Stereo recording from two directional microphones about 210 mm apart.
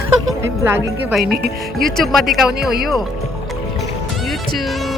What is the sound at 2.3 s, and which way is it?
Speech, centre (ahead or behind).